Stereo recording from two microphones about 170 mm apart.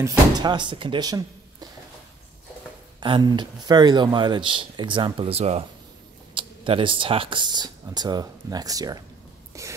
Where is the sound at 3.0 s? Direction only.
25° right (ahead or behind).